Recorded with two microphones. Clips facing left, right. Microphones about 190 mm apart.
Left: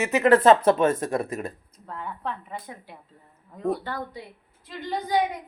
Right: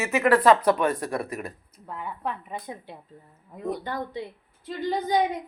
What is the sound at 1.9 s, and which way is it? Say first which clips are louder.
A woman's voice: right 1 dB; 10° right (ahead or behind).